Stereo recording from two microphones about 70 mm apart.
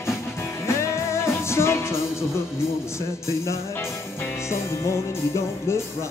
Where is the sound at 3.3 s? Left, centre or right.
Left.